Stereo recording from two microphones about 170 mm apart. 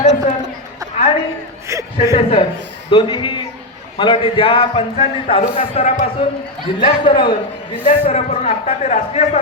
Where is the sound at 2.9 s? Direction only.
30° left (ahead or behind).